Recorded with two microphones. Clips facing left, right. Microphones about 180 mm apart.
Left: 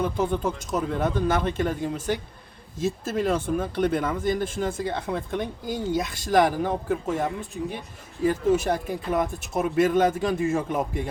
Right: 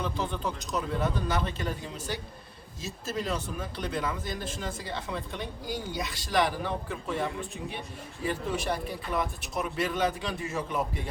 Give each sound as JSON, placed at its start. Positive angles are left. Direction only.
{"t": 0.0, "sound": "speech", "side_deg": 50}